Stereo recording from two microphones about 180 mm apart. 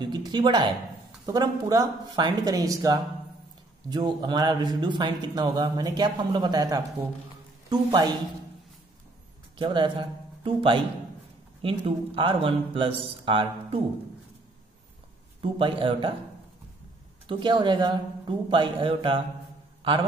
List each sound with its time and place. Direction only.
0.0 s a man's voice: 25° right (ahead or behind)
9.6 s a man's voice: 25° right (ahead or behind)
15.4 s a man's voice: 30° right (ahead or behind)
17.3 s a man's voice: 25° right (ahead or behind)